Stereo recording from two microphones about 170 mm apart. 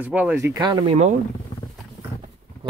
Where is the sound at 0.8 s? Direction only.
40° right (ahead or behind).